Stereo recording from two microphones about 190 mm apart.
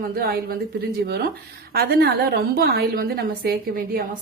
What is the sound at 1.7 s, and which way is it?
A woman's voice, 55° right (ahead or behind).